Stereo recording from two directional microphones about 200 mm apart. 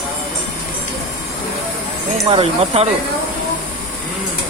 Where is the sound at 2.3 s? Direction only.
30° right (ahead or behind).